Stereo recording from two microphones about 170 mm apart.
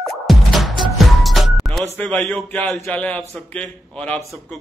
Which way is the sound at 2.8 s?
5° left (ahead or behind).